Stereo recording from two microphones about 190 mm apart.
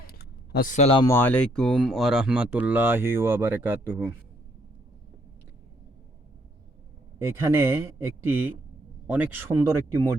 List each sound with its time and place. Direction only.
0.1 s a sound: 55° left (ahead or behind); by 1.0 s 35° left (ahead or behind)
1.0 s speech: 10° left (ahead or behind); by 4.1 s 10° right (ahead or behind)
7.2 s speech: 15° right (ahead or behind)